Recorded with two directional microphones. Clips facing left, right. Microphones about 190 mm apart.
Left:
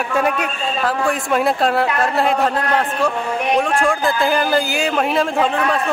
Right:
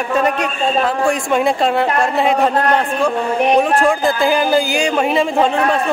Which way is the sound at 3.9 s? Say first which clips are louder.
Right 3 dB; centre (ahead or behind).